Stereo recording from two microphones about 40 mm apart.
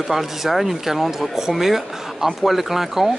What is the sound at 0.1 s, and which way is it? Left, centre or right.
Speech, centre.